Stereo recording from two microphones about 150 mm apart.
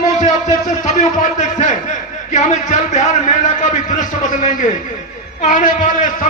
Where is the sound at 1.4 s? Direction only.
50° left (ahead or behind).